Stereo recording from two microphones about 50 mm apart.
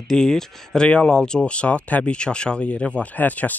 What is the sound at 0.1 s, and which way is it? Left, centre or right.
Speech, centre.